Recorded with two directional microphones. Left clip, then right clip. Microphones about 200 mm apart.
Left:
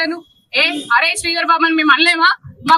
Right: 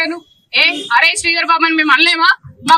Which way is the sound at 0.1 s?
20° left (ahead or behind).